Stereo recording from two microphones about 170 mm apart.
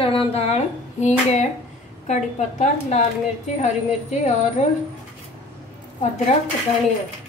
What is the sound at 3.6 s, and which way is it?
A woman's voice, 45° left (ahead or behind).